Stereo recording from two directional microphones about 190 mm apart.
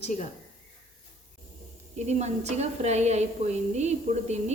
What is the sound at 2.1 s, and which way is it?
A woman's voice, 35° right (ahead or behind).